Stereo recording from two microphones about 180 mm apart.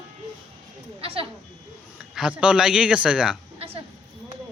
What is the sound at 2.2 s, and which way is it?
A man's voice, 5° right (ahead or behind).